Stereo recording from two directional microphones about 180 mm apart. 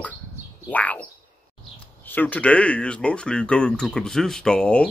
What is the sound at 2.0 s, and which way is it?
Speech, 10° left (ahead or behind).